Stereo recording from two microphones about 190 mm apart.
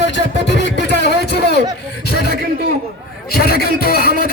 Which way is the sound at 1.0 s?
60° left (ahead or behind).